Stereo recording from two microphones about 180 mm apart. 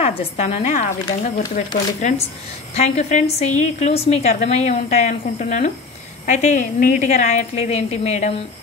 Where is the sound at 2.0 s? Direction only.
40° left (ahead or behind).